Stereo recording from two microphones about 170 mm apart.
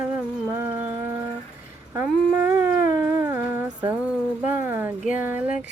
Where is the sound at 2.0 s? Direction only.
10° right (ahead or behind).